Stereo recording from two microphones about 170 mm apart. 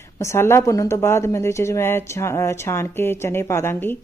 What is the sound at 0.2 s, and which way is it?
Speech, 15° left (ahead or behind).